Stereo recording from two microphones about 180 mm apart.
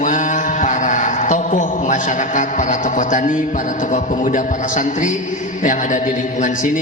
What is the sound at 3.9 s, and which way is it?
Speech, 45° left (ahead or behind).